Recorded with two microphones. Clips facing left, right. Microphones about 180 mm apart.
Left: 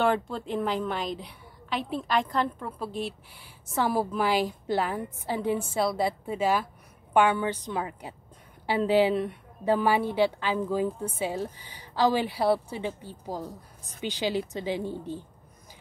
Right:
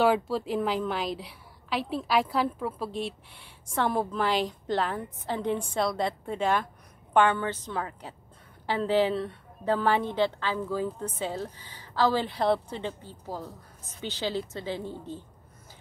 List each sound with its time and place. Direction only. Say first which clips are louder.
0.0 s a woman's voice: right 2 dB; 5° right (ahead or behind); by 15.1 s 15° left (ahead or behind)